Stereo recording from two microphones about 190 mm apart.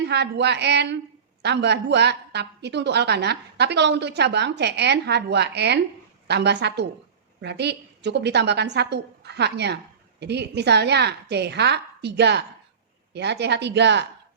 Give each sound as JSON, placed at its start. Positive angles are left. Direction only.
{"t": 0.0, "sound": "a woman's voice", "side_deg": -65}